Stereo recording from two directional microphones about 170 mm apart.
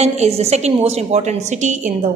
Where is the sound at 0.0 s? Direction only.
40° right (ahead or behind).